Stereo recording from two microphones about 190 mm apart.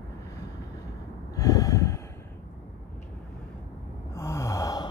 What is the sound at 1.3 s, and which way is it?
Gasp, 15° left (ahead or behind).